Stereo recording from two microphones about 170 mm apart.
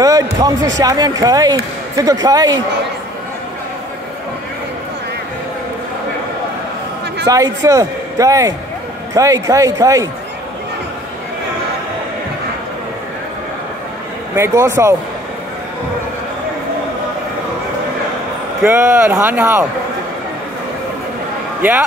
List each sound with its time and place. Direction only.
0.0 s a man's voice: 20° right (ahead or behind)
7.2 s a man's voice: 20° right (ahead or behind)
14.3 s a man's voice: 20° right (ahead or behind)
18.6 s a man's voice: 5° right (ahead or behind)
21.5 s speech: 10° right (ahead or behind)